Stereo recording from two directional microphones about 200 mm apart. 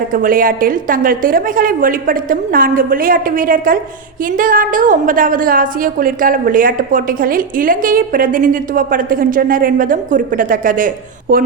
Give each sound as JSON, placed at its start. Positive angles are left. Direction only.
{"t": 0.1, "sound": "a woman's voice", "side_deg": -45}